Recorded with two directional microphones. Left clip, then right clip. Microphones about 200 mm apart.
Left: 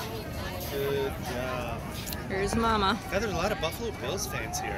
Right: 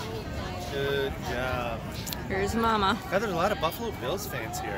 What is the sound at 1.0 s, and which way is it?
Vehicle, 35° right (ahead or behind).